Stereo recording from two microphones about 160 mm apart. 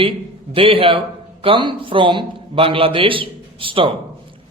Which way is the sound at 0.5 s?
35° right (ahead or behind).